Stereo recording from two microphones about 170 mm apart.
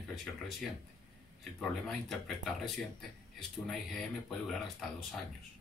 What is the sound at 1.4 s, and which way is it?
Speech, centre (ahead or behind).